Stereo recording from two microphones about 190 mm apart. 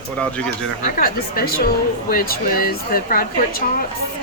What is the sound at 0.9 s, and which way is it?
A woman's voice, 50° left (ahead or behind).